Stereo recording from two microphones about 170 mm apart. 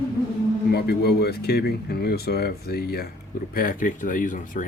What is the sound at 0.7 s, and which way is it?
Speech, 65° left (ahead or behind).